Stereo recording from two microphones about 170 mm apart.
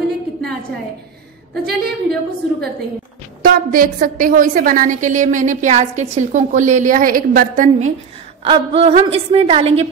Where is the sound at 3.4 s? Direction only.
55° right (ahead or behind).